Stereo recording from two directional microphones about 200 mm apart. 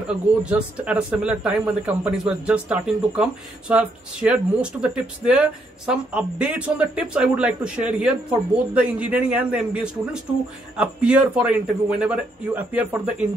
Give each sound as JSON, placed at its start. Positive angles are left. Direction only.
{"t": 0.1, "sound": "a man's voice", "side_deg": -5}